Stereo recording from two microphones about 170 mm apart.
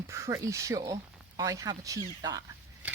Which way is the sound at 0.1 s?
15° right (ahead or behind).